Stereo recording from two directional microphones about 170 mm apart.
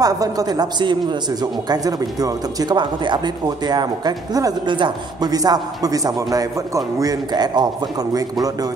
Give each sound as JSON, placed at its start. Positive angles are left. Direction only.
{"t": 0.0, "sound": "speech", "side_deg": -20}